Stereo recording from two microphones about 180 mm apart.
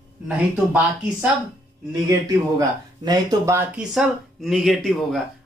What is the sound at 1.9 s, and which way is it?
Speech, 20° right (ahead or behind).